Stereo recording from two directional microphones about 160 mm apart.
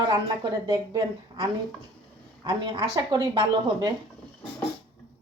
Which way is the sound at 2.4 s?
25° right (ahead or behind).